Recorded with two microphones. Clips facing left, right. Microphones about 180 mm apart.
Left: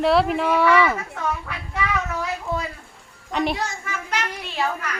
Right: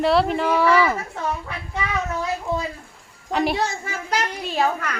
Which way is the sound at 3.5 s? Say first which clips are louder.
Right 3 dB; 30° right (ahead or behind).